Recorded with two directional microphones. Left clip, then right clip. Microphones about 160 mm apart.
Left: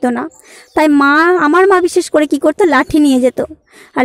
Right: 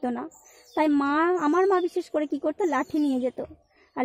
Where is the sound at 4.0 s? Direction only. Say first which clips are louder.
Left 15 dB; 35° left (ahead or behind).